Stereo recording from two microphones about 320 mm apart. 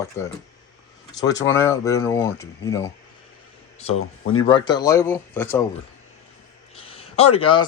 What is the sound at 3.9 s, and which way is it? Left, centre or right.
Speech, left.